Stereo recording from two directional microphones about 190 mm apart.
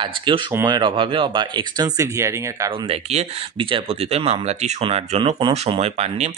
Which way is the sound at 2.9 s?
30° right (ahead or behind).